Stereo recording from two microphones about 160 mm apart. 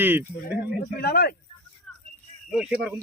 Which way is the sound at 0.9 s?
75° left (ahead or behind).